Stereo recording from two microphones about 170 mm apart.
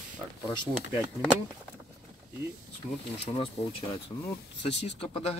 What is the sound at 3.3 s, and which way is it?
Speech, 35° left (ahead or behind).